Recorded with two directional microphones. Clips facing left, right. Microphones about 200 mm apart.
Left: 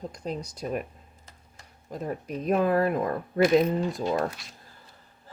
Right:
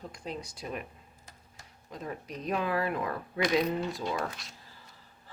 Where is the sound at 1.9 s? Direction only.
50° left (ahead or behind).